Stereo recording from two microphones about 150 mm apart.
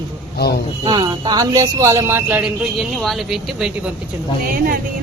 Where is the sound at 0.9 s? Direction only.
30° right (ahead or behind).